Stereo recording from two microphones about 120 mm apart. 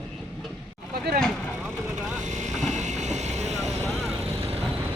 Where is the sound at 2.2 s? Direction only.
80° right.